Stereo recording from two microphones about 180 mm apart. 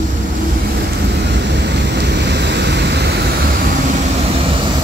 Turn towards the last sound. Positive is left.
turn(degrees=-70)  # may be behind; listen again after turning